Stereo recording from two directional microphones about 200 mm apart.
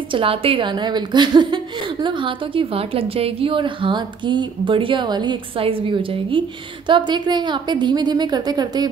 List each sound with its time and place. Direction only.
0.1 s a woman's voice: 25° right (ahead or behind)